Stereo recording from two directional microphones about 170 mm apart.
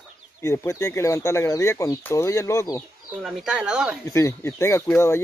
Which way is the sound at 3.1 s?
Centre (ahead or behind).